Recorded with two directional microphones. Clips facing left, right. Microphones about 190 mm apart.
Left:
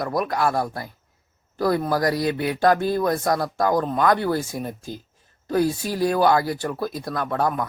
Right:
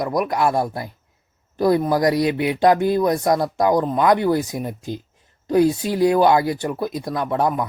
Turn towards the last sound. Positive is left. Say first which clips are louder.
# right 3 dB
turn(degrees=-20)  # may be behind; listen again after turning